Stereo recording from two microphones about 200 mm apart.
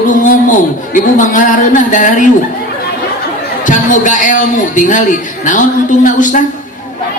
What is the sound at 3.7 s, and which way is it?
A man's voice, 40° left (ahead or behind).